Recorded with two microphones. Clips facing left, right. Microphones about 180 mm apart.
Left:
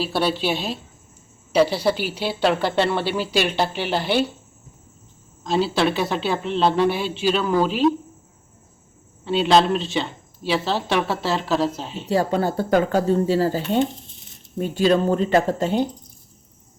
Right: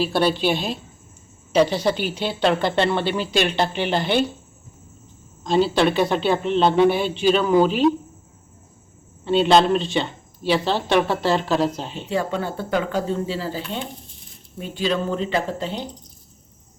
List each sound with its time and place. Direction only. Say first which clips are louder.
0.0 s speech: right 2 dB; centre (ahead or behind)
5.4 s speech: right 2 dB; 5° left (ahead or behind)
9.2 s speech: right 1 dB; centre (ahead or behind)
12.0 s speech: left 4 dB; 35° left (ahead or behind)